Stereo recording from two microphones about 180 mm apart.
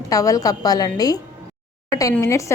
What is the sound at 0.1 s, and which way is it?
A woman's voice, 20° left (ahead or behind).